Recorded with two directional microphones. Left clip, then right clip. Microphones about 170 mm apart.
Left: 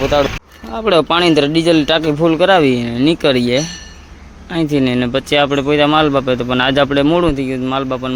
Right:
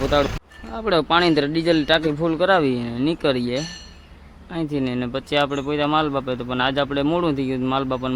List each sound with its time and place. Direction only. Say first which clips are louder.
0.7 s speech: left 6 dB; centre (ahead or behind)